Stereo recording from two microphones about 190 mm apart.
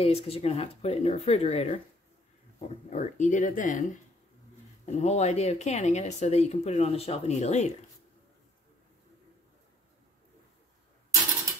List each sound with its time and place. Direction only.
0.0 s speech: 30° left (ahead or behind)
2.9 s speech: 40° left (ahead or behind)
4.8 s speech: 35° left (ahead or behind)